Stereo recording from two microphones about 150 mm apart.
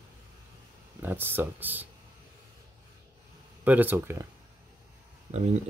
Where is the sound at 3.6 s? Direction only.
10° right (ahead or behind).